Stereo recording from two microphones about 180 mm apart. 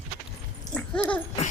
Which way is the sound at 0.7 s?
5° left (ahead or behind).